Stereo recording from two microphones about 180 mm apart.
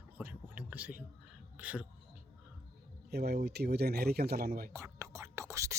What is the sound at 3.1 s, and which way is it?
Speech, 65° right (ahead or behind).